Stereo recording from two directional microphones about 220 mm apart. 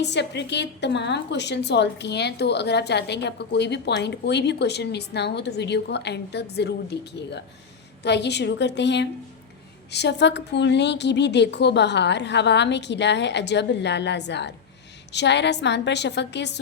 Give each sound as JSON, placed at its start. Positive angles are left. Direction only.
{"t": 0.0, "sound": "a woman's voice", "side_deg": 50}